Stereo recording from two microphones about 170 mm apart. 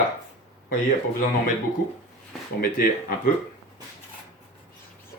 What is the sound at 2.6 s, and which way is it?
Speech, 60° left (ahead or behind).